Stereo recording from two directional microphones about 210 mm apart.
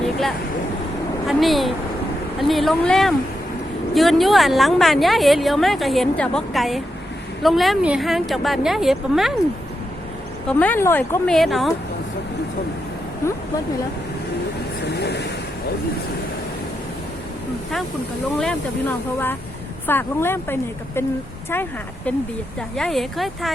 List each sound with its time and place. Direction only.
0.0 s vehicle: centre (ahead or behind)
1.3 s a woman's voice: centre (ahead or behind)
10.5 s a woman's voice: 5° left (ahead or behind)
14.8 s vehicle: 50° left (ahead or behind)
18.3 s a woman's voice: 5° left (ahead or behind)